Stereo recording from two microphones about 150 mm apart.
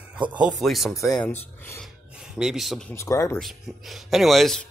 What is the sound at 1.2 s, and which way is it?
Speech, 10° left (ahead or behind).